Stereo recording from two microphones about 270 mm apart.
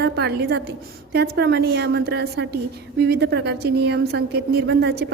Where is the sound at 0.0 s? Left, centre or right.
Right.